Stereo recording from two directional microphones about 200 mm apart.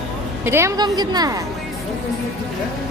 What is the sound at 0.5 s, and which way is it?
Speech, 15° right (ahead or behind).